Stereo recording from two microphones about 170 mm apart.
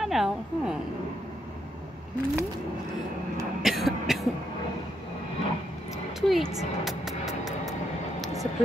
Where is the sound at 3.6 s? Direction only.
Centre (ahead or behind).